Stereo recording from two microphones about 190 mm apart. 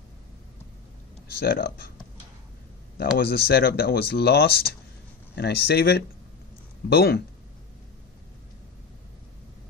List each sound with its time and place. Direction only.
1.4 s speech: 50° left (ahead or behind)
3.2 s speech: 55° left (ahead or behind)